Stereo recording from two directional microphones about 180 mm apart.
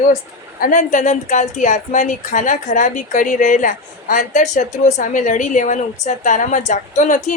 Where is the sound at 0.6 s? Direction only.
45° left (ahead or behind).